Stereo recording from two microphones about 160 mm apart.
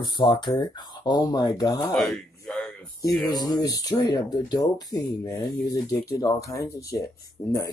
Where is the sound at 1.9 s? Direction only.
Centre (ahead or behind).